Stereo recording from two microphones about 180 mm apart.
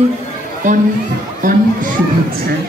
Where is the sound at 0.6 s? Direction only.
45° right (ahead or behind).